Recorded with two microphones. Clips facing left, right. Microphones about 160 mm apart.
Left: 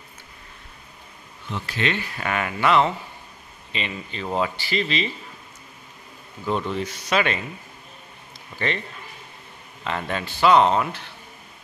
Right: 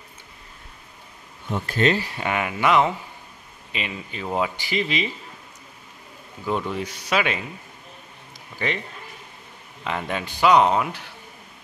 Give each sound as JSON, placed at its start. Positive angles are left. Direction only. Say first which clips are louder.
{"t": 1.5, "sound": "speech", "louder": "right 5 dB", "side_deg": -45}
{"t": 2.1, "sound": "speech", "louder": "right 1 dB", "side_deg": -15}
{"t": 6.4, "sound": "speech", "louder": "left 1 dB", "side_deg": -10}
{"t": 8.5, "sound": "speech", "louder": "even", "side_deg": -10}
{"t": 9.8, "sound": "speech", "louder": "even", "side_deg": -10}